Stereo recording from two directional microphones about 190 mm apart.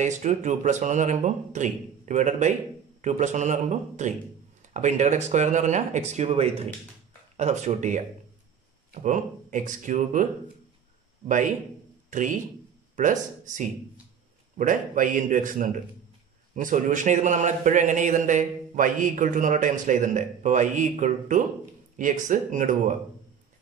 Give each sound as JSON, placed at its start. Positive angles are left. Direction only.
{"t": 0.0, "sound": "a man's voice", "side_deg": -40}
{"t": 9.0, "sound": "a man's voice", "side_deg": -40}
{"t": 11.2, "sound": "a man's voice", "side_deg": -40}